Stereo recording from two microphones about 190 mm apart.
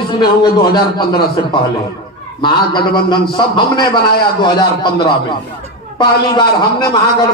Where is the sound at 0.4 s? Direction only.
25° left (ahead or behind).